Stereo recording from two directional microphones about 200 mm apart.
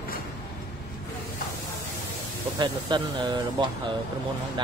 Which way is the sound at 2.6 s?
20° right (ahead or behind).